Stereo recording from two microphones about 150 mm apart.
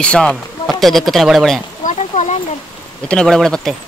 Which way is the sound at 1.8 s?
50° left (ahead or behind).